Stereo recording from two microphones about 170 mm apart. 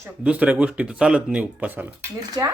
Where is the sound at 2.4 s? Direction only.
20° right (ahead or behind).